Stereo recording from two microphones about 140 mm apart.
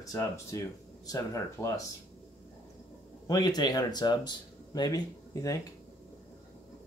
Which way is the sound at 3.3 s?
30° left (ahead or behind).